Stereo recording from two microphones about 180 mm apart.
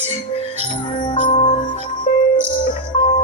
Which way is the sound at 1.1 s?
35° left (ahead or behind).